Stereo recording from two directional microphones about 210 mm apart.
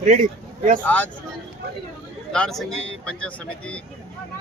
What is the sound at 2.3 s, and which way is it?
Speech, centre (ahead or behind).